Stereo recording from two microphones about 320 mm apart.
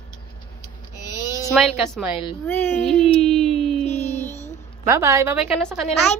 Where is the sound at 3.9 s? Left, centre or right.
Centre.